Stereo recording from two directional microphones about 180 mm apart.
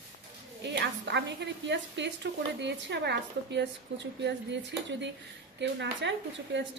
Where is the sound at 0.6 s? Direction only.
75° right (ahead or behind).